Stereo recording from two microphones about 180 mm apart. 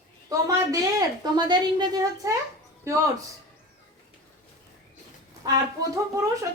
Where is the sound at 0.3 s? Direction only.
20° right (ahead or behind).